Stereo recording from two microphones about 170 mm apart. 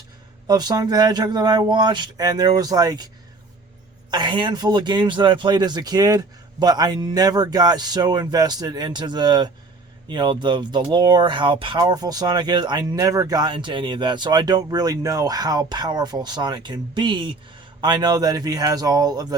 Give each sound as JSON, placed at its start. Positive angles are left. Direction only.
{"t": 0.4, "sound": "speech", "side_deg": -25}
{"t": 4.1, "sound": "speech", "side_deg": -25}